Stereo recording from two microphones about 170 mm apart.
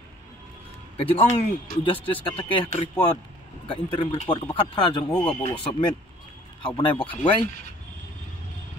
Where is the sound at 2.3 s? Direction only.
30° left (ahead or behind).